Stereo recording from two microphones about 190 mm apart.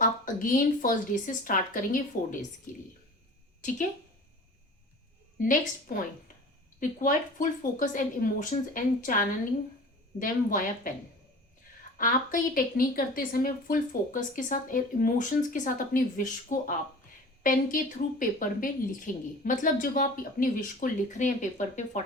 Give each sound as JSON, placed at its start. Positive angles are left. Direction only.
{"t": 0.0, "sound": "a woman's voice", "side_deg": 45}
{"t": 5.4, "sound": "a woman's voice", "side_deg": 45}
{"t": 11.9, "sound": "a woman's voice", "side_deg": 45}